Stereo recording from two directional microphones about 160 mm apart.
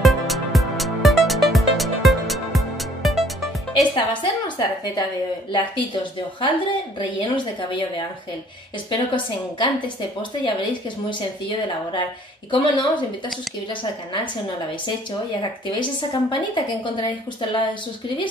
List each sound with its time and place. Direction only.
0.0 s music: centre (ahead or behind)
3.9 s a woman's voice: 30° left (ahead or behind)
8.9 s a woman's voice: 30° left (ahead or behind)
12.4 s a woman's voice: 30° left (ahead or behind)
15.8 s a woman's voice: 30° left (ahead or behind)